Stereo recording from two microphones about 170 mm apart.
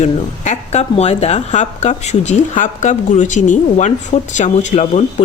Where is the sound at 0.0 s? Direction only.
40° left (ahead or behind).